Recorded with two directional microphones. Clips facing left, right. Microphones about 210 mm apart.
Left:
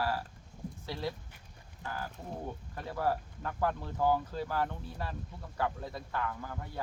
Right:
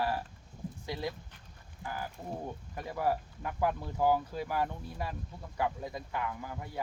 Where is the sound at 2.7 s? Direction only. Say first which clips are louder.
Right 1 dB; 15° right (ahead or behind).